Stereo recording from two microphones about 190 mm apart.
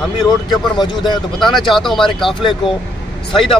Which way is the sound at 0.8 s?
25° left (ahead or behind).